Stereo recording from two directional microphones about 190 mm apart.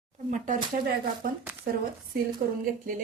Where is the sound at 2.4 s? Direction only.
55° right (ahead or behind).